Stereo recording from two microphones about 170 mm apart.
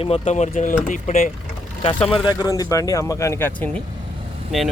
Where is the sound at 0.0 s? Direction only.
40° left (ahead or behind).